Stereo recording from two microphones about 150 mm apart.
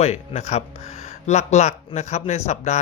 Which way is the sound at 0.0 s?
45° left (ahead or behind).